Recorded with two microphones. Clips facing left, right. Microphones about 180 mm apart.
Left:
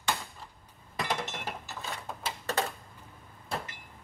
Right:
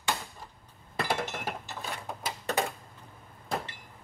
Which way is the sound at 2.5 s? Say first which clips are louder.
Right 2 dB; 15° right (ahead or behind).